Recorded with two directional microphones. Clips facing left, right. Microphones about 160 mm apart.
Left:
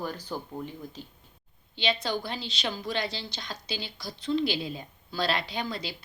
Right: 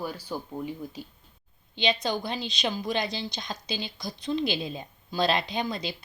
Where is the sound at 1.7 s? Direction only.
20° right (ahead or behind).